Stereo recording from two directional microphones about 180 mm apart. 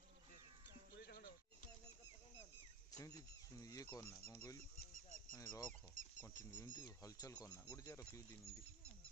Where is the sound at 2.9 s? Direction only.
20° left (ahead or behind).